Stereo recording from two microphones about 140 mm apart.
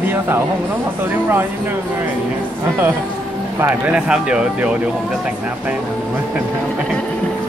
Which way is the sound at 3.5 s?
15° right (ahead or behind).